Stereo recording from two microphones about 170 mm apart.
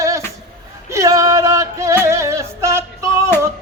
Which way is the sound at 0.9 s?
20° right (ahead or behind).